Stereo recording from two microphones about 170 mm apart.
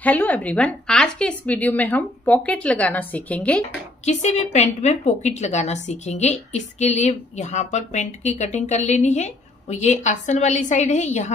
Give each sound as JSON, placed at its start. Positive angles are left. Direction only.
{"t": 0.0, "sound": "a woman's voice", "side_deg": 10}
{"t": 4.0, "sound": "a woman's voice", "side_deg": 45}